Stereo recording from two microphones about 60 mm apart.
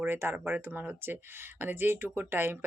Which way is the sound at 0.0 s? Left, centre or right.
Right.